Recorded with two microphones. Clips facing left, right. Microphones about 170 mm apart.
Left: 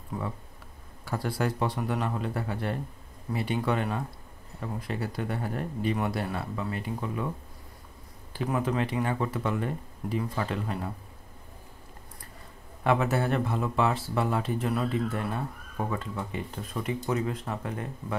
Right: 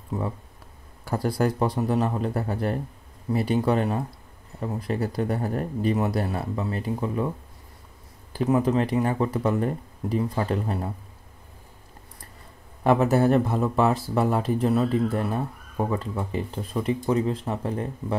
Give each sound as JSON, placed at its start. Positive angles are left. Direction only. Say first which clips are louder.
{"t": 0.1, "sound": "a man's voice", "louder": "right 5 dB", "side_deg": -25}
{"t": 1.0, "sound": "speech", "louder": "right 5 dB", "side_deg": -40}
{"t": 1.9, "sound": "a man's voice", "louder": "right 6 dB", "side_deg": -25}
{"t": 2.1, "sound": "speech", "louder": "right 5 dB", "side_deg": -40}
{"t": 8.6, "sound": "speech", "louder": "right 5 dB", "side_deg": -35}
{"t": 12.8, "sound": "speech", "louder": "right 6 dB", "side_deg": -40}